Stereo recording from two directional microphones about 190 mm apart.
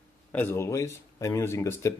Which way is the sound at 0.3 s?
10° left (ahead or behind).